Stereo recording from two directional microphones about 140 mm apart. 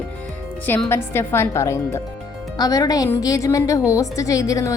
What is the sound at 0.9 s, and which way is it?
A woman's voice, 15° left (ahead or behind).